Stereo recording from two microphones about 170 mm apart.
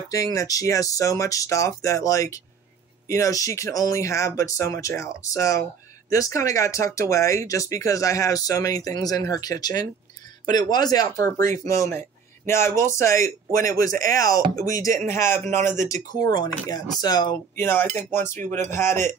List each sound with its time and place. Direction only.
0.1 s speech: 20° left (ahead or behind)
17.6 s speech: 15° left (ahead or behind)